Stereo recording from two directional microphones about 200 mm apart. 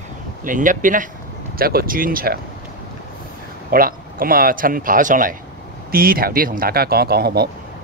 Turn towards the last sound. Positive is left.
turn(degrees=-50)  # may be behind; listen again after turning